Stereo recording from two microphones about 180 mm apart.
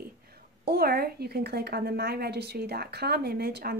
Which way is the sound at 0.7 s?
60° right (ahead or behind).